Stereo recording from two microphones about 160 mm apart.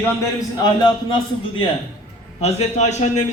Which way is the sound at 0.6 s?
25° left (ahead or behind).